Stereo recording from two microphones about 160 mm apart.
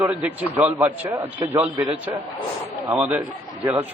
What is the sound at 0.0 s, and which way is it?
A man's voice, 10° right (ahead or behind).